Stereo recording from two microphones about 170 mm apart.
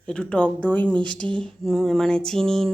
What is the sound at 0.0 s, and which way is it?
A woman's voice, 5° left (ahead or behind).